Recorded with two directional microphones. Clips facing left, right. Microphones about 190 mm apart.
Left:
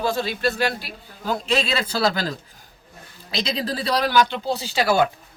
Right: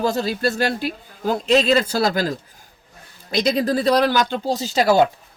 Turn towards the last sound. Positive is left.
turn(degrees=-40)  # may be behind; listen again after turning